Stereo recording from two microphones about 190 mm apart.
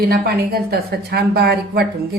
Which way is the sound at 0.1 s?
55° right (ahead or behind).